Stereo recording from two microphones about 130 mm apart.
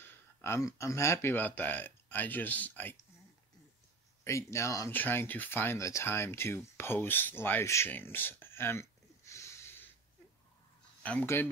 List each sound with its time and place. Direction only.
0.0 s speech: 20° left (ahead or behind)
4.2 s speech: 20° left (ahead or behind)
11.0 s speech: 10° left (ahead or behind)